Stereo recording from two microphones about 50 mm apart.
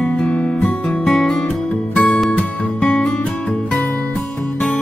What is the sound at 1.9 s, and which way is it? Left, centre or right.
Music, left.